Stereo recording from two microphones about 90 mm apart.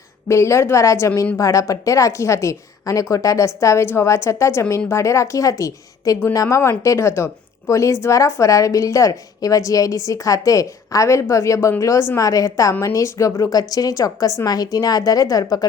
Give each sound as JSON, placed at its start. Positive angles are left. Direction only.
{"t": 0.3, "sound": "a woman's voice", "side_deg": 30}